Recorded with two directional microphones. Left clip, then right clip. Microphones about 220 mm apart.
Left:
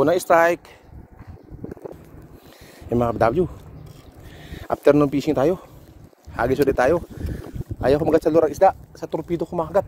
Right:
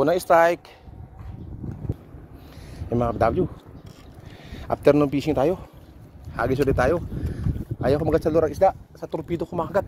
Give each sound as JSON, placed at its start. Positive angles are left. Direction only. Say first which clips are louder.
{"t": 0.0, "sound": "speech", "louder": "left 1 dB", "side_deg": 10}
{"t": 2.9, "sound": "speech", "louder": "left 3 dB", "side_deg": 15}
{"t": 9.1, "sound": "speech", "louder": "left 3 dB", "side_deg": 0}